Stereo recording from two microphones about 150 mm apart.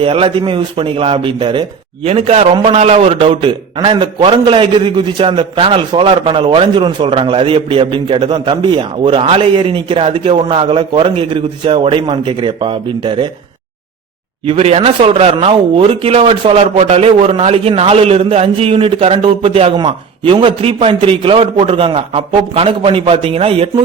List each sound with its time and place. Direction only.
0.0 s a man's voice: 35° right (ahead or behind)
14.4 s a man's voice: 40° right (ahead or behind)